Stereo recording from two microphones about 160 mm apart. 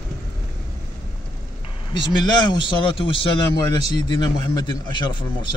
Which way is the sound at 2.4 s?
30° left (ahead or behind).